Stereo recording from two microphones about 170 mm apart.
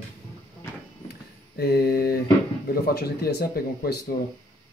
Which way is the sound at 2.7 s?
65° left (ahead or behind).